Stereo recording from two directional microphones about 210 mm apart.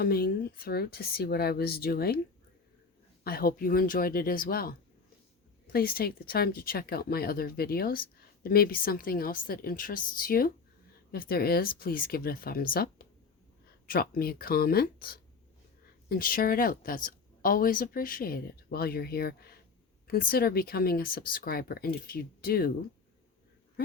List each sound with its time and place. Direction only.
0.0 s speech: 45° left (ahead or behind)
3.2 s speech: 45° left (ahead or behind)
5.7 s speech: 45° left (ahead or behind)